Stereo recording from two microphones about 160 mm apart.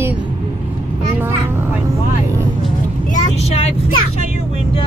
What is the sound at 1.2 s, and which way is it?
Vehicle, 15° right (ahead or behind).